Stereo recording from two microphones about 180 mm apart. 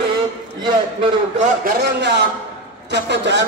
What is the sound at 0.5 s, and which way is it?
Speech, 25° right (ahead or behind).